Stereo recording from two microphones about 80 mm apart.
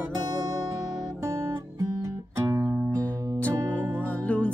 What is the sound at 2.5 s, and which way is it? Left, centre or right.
Music, right.